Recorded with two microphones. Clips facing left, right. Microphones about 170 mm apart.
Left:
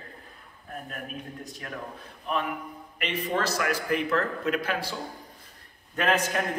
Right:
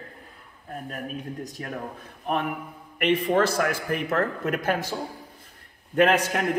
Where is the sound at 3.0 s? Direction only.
55° right (ahead or behind).